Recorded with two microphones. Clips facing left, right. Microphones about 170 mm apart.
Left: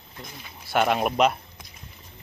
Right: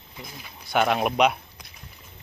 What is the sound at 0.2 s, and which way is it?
Speech, centre (ahead or behind).